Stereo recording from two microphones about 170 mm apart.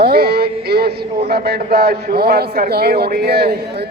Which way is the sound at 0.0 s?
70° right (ahead or behind).